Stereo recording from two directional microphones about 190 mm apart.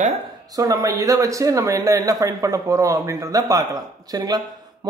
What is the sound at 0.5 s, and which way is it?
A man's voice, 20° right (ahead or behind).